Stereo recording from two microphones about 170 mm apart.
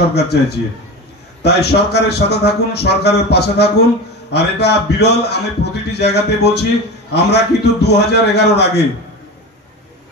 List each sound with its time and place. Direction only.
0.1 s a man's voice: 75° left (ahead or behind)